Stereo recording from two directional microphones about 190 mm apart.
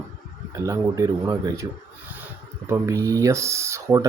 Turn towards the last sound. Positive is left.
turn(degrees=-15)  # may be behind; listen again after turning